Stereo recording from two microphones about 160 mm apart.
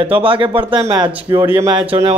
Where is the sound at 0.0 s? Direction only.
35° right (ahead or behind).